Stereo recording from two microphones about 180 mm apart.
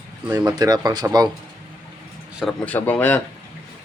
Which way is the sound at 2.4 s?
5° left (ahead or behind).